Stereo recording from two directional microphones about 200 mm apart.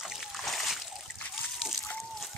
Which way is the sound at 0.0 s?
Centre (ahead or behind).